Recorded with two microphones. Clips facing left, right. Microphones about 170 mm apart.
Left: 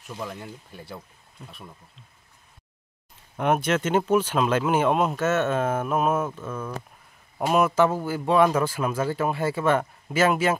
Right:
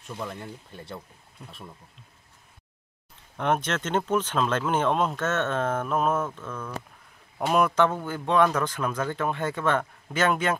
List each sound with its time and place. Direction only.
0.2 s speech: 5° left (ahead or behind)
3.3 s speech: 10° left (ahead or behind)